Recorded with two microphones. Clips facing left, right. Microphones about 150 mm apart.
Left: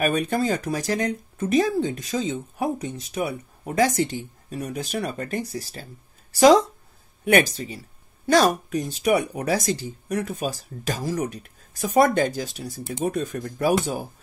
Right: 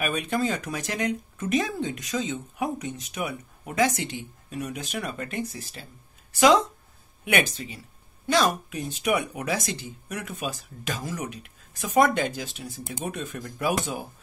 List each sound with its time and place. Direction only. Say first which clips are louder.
0.0 s speech: left 4 dB; 40° left (ahead or behind)